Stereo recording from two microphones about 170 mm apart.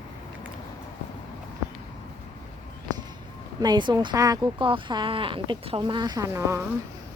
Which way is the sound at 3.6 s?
25° right (ahead or behind).